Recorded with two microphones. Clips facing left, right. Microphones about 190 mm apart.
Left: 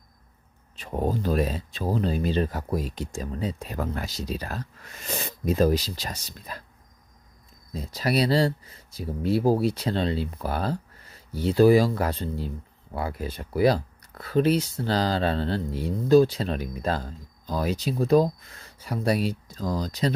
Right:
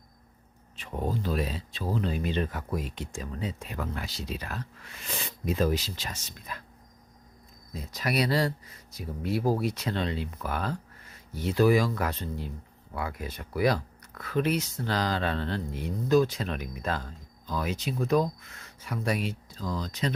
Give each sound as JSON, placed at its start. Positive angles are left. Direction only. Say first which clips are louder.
{"t": 0.8, "sound": "speech", "louder": "left 5 dB", "side_deg": 40}
{"t": 7.7, "sound": "speech", "louder": "left 5 dB", "side_deg": 30}